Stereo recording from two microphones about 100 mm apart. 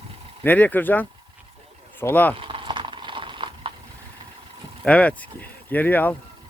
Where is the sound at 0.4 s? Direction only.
15° left (ahead or behind).